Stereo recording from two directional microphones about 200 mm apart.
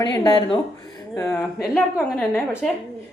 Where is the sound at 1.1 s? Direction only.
5° left (ahead or behind).